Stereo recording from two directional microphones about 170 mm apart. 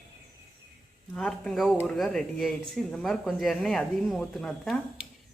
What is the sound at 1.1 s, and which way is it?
Speech, 5° left (ahead or behind).